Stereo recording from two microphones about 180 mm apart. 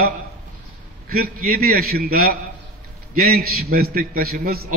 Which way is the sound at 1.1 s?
50° right (ahead or behind).